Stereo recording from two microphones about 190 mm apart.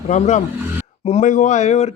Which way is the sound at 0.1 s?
40° left (ahead or behind).